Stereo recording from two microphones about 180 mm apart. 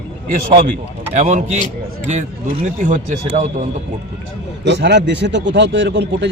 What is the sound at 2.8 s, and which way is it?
Speech, 45° right (ahead or behind).